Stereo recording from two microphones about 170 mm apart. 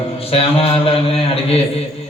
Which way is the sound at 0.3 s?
35° left (ahead or behind).